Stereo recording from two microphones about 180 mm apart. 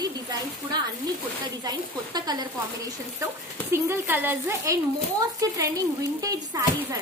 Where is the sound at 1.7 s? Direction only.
20° right (ahead or behind).